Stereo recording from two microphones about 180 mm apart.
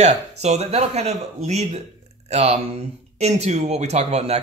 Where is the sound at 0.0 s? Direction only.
40° right (ahead or behind).